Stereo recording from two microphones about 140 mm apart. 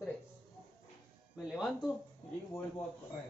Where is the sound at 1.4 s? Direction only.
Centre (ahead or behind).